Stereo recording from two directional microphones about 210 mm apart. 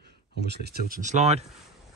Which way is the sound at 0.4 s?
50° right (ahead or behind).